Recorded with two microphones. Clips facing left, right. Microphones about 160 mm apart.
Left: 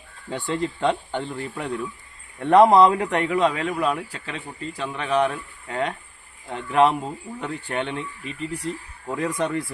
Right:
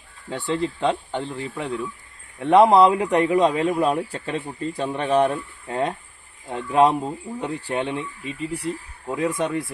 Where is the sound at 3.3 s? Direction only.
25° right (ahead or behind).